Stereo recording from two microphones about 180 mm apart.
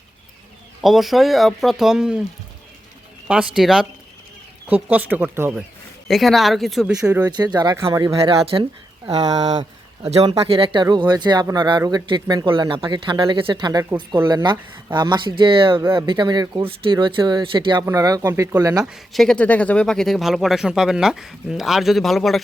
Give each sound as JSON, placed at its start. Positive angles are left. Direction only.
{"t": 0.8, "sound": "speech", "side_deg": 0}
{"t": 3.2, "sound": "speech", "side_deg": -5}
{"t": 6.1, "sound": "speech", "side_deg": 0}
{"t": 7.0, "sound": "speech", "side_deg": -15}
{"t": 18.9, "sound": "speech", "side_deg": 0}